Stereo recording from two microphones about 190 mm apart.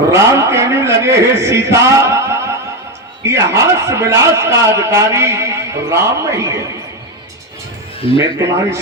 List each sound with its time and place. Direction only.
0.1 s speech: 15° right (ahead or behind)
8.2 s speech: 15° right (ahead or behind)